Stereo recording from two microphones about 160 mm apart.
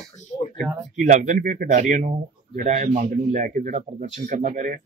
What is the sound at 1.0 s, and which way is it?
A man's voice, 50° right (ahead or behind).